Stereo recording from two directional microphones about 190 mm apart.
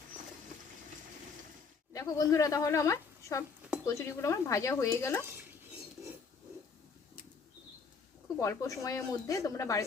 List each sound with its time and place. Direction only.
1.9 s speech: 20° left (ahead or behind)
8.4 s speech: 15° left (ahead or behind)